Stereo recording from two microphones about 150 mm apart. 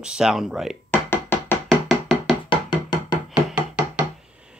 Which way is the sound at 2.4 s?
30° left (ahead or behind).